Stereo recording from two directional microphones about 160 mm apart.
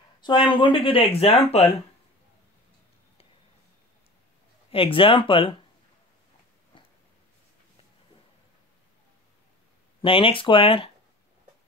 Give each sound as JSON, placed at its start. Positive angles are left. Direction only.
{"t": 0.2, "sound": "speech", "side_deg": 30}
{"t": 4.6, "sound": "speech", "side_deg": 35}
{"t": 6.7, "sound": "a sound", "side_deg": 30}
{"t": 10.0, "sound": "speech", "side_deg": 35}